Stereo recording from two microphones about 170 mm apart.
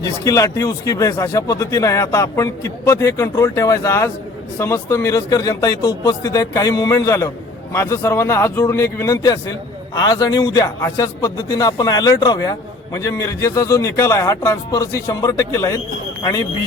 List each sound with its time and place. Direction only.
0.0 s a man's voice: 20° left (ahead or behind)